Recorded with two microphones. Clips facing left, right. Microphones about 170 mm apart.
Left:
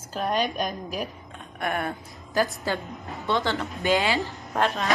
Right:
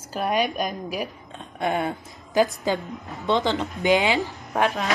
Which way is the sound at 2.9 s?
Centre (ahead or behind).